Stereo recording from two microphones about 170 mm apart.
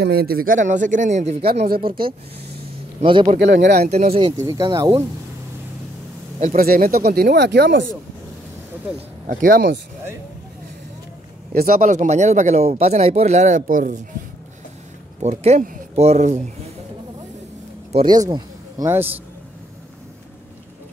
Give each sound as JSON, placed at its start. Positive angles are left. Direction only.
{"t": 0.0, "sound": "speech", "side_deg": -65}
{"t": 1.7, "sound": "speech", "side_deg": -60}
{"t": 3.0, "sound": "speech", "side_deg": -30}
{"t": 3.3, "sound": "speech", "side_deg": -90}
{"t": 3.8, "sound": "speech", "side_deg": -40}
{"t": 4.5, "sound": "speech", "side_deg": -20}
{"t": 6.4, "sound": "speech", "side_deg": -60}
{"t": 9.3, "sound": "speech", "side_deg": -55}
{"t": 11.5, "sound": "speech", "side_deg": -60}
{"t": 15.2, "sound": "speech", "side_deg": -40}
{"t": 17.9, "sound": "speech", "side_deg": -25}